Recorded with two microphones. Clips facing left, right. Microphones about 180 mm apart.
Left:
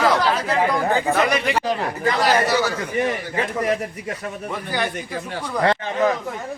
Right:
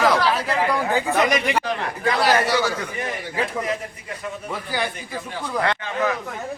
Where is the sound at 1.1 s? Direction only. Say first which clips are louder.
Even; 15° right (ahead or behind).